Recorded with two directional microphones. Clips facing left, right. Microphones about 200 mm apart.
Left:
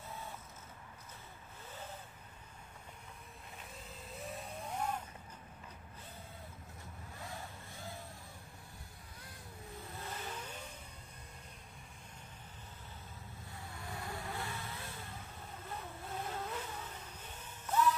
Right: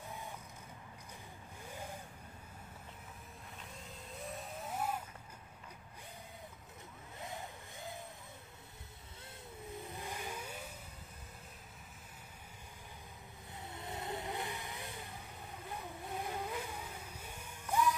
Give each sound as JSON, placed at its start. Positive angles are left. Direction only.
{"t": 1.7, "sound": "waves", "side_deg": -15}
{"t": 4.1, "sound": "vehicle", "side_deg": 0}
{"t": 7.2, "sound": "vehicle", "side_deg": -20}
{"t": 9.8, "sound": "vehicle", "side_deg": -15}
{"t": 13.6, "sound": "vehicle", "side_deg": -20}